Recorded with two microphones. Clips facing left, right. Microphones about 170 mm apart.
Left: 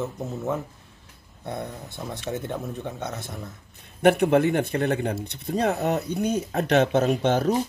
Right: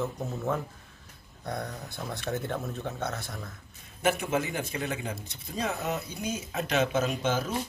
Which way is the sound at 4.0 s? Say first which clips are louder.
Left 9 dB; 60° left (ahead or behind).